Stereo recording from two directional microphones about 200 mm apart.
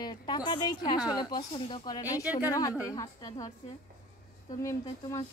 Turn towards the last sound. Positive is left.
turn(degrees=20)  # may be behind; listen again after turning